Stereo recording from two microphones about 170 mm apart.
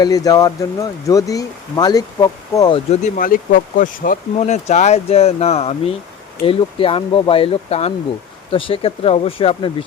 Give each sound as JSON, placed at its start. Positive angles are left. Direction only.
{"t": 0.0, "sound": "speech", "side_deg": 20}
{"t": 2.7, "sound": "speech", "side_deg": 40}
{"t": 3.2, "sound": "speech", "side_deg": 55}